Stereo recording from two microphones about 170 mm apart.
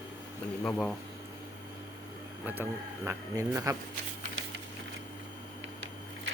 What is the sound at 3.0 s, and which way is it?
Speech, 15° right (ahead or behind).